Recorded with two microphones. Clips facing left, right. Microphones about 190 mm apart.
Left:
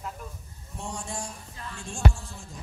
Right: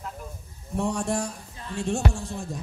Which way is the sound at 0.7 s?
65° right (ahead or behind).